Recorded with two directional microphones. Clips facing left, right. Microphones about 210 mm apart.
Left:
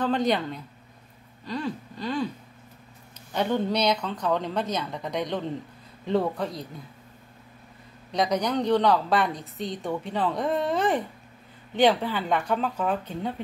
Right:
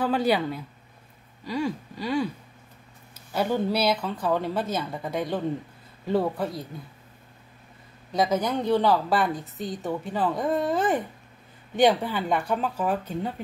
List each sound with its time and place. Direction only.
0.0 s speech: 5° right (ahead or behind)
3.3 s a woman's voice: 5° right (ahead or behind)
8.1 s a woman's voice: 5° right (ahead or behind)
11.8 s speech: 10° right (ahead or behind)